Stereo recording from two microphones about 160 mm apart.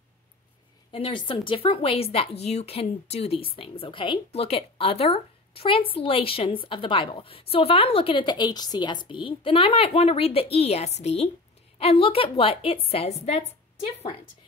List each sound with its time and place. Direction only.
0.9 s speech: 35° left (ahead or behind)